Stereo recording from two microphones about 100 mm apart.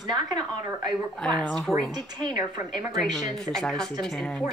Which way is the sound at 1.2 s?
5° left (ahead or behind).